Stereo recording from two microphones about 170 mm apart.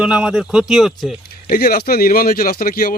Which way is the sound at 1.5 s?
65° left (ahead or behind).